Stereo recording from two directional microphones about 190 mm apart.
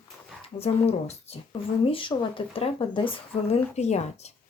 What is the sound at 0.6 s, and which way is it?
Speech, 35° left (ahead or behind).